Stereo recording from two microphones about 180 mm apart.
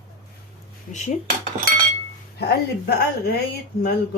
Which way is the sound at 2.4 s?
60° left (ahead or behind).